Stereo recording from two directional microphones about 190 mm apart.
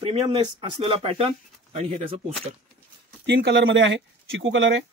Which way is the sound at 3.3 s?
60° right (ahead or behind).